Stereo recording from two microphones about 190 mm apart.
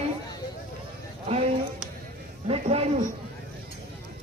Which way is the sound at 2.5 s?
30° right (ahead or behind).